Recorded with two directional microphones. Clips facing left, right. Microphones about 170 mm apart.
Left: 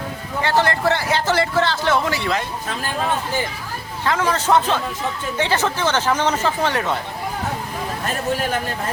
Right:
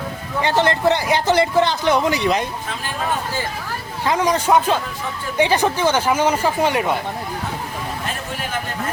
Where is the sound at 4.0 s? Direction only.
15° right (ahead or behind).